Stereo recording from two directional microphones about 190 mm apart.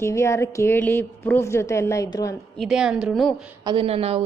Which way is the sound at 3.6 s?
25° right (ahead or behind).